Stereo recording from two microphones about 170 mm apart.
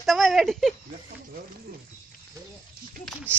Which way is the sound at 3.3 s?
15° right (ahead or behind).